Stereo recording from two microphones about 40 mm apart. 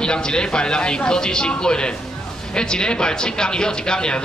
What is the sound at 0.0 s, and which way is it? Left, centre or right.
A man's voice, left.